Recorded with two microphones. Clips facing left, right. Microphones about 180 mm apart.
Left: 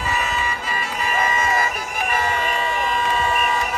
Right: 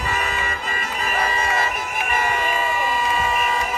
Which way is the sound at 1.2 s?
35° right (ahead or behind).